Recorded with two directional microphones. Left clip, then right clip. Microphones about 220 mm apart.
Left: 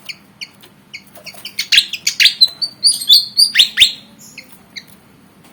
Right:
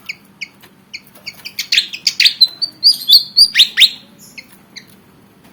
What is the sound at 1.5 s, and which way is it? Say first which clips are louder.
Bird: left 3 dB; 5° right (ahead or behind).